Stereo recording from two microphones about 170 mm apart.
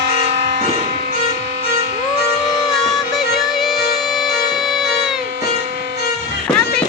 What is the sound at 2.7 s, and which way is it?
Music, centre (ahead or behind).